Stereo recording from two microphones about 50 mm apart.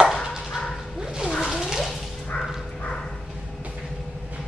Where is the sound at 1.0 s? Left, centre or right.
Centre.